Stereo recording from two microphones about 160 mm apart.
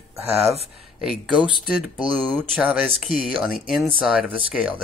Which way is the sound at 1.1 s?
5° right (ahead or behind).